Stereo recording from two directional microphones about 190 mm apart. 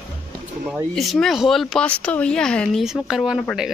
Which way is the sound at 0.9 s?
Centre (ahead or behind).